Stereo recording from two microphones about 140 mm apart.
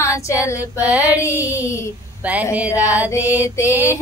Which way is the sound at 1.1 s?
20° left (ahead or behind).